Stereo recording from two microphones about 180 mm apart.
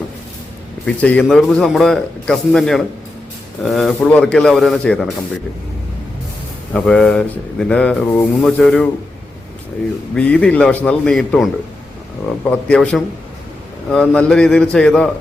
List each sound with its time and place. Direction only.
0.9 s speech: 5° left (ahead or behind)
6.7 s speech: 5° left (ahead or behind)
10.2 s speech: 5° left (ahead or behind)
12.5 s speech: 5° left (ahead or behind)